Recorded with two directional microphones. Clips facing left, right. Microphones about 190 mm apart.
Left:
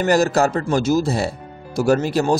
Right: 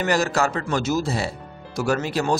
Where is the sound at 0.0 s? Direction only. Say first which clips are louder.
Left 5 dB; 40° left (ahead or behind).